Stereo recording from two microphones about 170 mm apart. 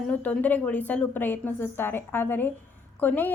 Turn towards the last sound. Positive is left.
turn(degrees=10)  # may be behind; listen again after turning